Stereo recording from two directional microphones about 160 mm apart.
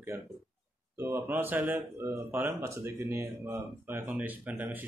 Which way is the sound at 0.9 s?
15° right (ahead or behind).